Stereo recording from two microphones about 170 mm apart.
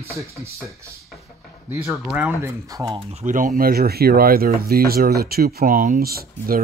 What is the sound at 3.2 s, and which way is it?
Speech, 50° right (ahead or behind).